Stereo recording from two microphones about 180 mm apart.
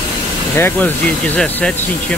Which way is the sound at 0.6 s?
10° left (ahead or behind).